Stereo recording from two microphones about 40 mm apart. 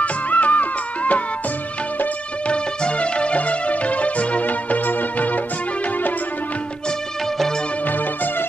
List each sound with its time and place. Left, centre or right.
0.0 s music: left
2.4 s music: left